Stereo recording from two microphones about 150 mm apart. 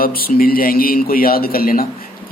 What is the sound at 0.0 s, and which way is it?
A man's voice, 75° left (ahead or behind).